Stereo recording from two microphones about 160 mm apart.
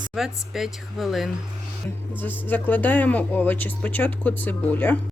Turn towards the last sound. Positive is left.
turn(degrees=10)  # may be behind; listen again after turning